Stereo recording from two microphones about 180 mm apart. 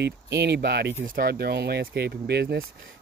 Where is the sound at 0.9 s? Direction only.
50° right (ahead or behind).